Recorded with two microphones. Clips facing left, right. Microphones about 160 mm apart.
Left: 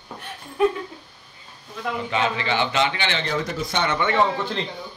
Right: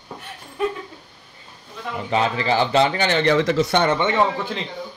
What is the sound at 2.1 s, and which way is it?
A man's voice, 35° right (ahead or behind).